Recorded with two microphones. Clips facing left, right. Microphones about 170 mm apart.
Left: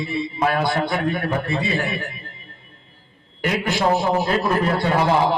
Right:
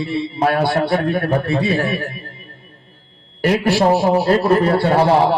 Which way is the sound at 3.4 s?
35° right (ahead or behind).